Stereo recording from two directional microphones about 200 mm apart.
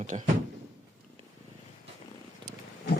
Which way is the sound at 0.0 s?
40° right (ahead or behind).